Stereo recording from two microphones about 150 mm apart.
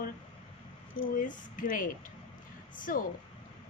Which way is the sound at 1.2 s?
60° left (ahead or behind).